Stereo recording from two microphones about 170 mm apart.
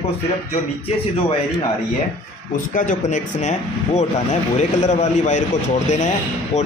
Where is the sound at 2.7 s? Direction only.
45° left (ahead or behind).